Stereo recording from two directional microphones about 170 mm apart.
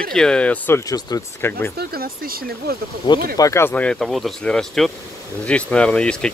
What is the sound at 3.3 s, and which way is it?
Speech, 15° left (ahead or behind).